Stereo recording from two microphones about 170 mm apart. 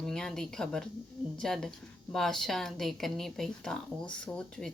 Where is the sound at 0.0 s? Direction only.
5° left (ahead or behind).